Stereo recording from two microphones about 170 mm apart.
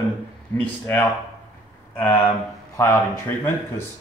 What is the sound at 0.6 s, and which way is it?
Speech, 10° left (ahead or behind).